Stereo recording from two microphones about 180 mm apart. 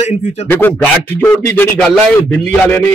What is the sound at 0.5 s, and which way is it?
Speech, 10° left (ahead or behind).